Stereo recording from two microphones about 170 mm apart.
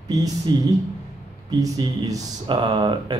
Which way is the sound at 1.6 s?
20° right (ahead or behind).